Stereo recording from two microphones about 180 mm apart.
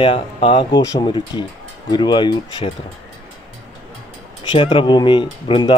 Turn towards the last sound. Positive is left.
turn(degrees=25)  # may be behind; listen again after turning